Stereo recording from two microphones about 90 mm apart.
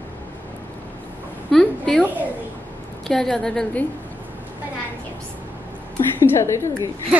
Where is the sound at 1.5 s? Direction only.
5° left (ahead or behind).